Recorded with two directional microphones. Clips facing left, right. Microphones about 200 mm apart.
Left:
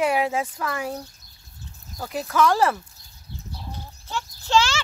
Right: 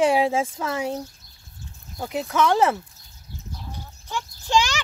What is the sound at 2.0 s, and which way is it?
Speech, 20° right (ahead or behind).